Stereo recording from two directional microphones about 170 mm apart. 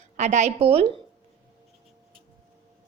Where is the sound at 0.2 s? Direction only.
45° right (ahead or behind).